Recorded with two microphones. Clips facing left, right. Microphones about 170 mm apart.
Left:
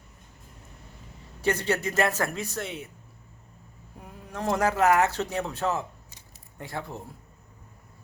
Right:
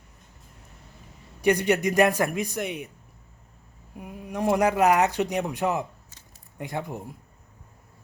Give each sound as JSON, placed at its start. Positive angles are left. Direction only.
{"t": 1.4, "sound": "a man's voice", "side_deg": -15}
{"t": 3.9, "sound": "a man's voice", "side_deg": -15}